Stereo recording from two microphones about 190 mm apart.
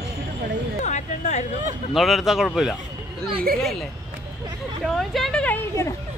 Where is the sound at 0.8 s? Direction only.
40° left (ahead or behind).